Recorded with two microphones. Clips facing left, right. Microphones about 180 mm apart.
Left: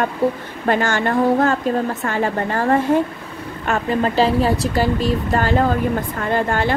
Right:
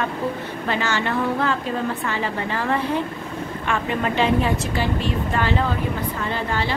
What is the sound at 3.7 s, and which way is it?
A woman's voice, 35° left (ahead or behind).